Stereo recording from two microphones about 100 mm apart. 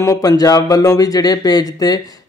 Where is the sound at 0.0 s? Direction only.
30° left (ahead or behind).